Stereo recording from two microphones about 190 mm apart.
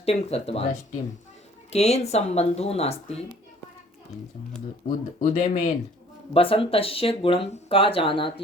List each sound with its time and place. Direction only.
0.0 s speech: 30° left (ahead or behind)
4.9 s speech: 40° left (ahead or behind)
6.3 s speech: 30° left (ahead or behind)